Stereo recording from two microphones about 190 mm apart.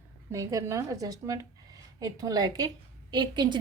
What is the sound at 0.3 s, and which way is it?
A woman's voice, 15° right (ahead or behind).